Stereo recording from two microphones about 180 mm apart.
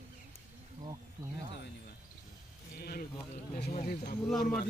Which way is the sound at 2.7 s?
60° left (ahead or behind).